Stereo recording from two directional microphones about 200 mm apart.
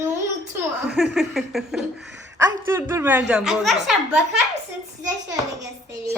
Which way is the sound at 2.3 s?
15° right (ahead or behind).